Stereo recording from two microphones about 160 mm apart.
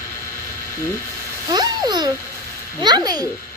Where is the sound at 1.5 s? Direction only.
25° right (ahead or behind).